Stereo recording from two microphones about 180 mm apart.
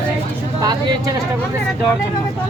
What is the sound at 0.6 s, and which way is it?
Speech, 25° right (ahead or behind).